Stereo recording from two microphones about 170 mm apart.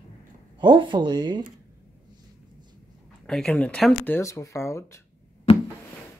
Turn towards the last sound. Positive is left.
turn(degrees=35)  # may be behind; listen again after turning